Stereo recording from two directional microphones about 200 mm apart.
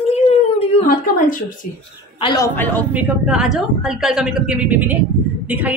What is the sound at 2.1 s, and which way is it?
Speech, 20° left (ahead or behind).